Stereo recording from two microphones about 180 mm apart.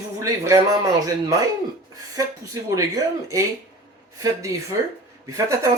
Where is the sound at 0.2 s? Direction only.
15° right (ahead or behind).